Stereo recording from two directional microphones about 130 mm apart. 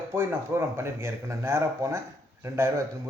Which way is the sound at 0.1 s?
20° right (ahead or behind).